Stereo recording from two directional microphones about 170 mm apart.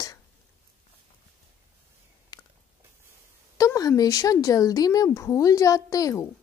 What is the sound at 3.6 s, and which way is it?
Speech, 20° left (ahead or behind).